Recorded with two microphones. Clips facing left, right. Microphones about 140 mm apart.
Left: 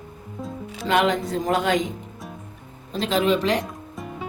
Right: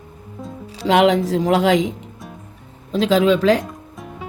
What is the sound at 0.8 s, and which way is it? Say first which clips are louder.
Speech: right 6 dB; 90° right.